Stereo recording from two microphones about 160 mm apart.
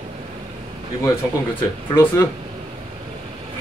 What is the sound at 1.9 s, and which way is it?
Speech, 20° left (ahead or behind).